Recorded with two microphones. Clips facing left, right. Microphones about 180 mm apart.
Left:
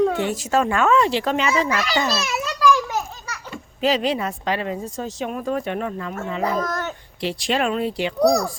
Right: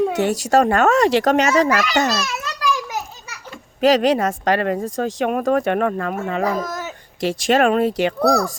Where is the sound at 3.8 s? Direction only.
45° right (ahead or behind); by 6.1 s 60° right (ahead or behind).